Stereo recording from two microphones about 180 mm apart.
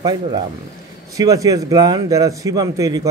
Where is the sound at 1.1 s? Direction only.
20° right (ahead or behind).